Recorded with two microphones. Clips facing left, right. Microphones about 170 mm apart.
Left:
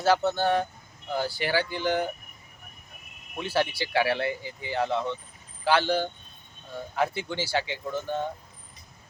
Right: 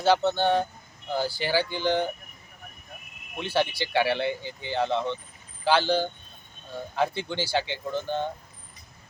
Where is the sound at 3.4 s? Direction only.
5° left (ahead or behind).